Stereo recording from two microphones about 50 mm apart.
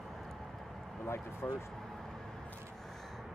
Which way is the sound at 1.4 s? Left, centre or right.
Left.